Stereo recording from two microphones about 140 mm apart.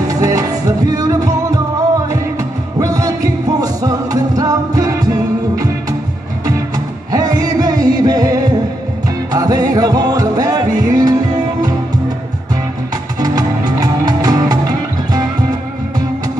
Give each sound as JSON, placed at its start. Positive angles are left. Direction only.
{"t": 0.1, "sound": "music", "side_deg": -25}
{"t": 7.1, "sound": "music", "side_deg": -25}
{"t": 13.2, "sound": "music", "side_deg": -25}